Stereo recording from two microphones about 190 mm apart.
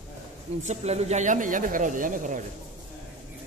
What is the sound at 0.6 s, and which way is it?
Speech, 35° right (ahead or behind).